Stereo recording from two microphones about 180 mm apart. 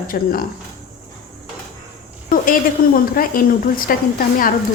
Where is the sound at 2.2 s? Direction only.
50° left (ahead or behind).